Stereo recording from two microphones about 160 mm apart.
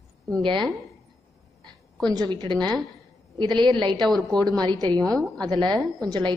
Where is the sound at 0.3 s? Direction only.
30° right (ahead or behind).